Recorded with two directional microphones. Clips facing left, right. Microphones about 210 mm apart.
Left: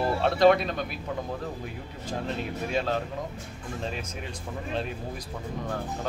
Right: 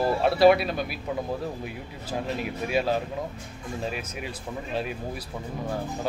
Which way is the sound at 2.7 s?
10° right (ahead or behind).